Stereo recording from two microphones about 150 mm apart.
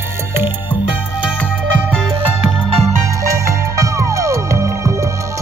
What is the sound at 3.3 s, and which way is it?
Music, 20° right (ahead or behind).